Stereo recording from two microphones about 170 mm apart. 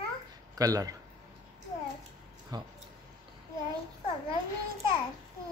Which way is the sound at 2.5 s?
25° right (ahead or behind).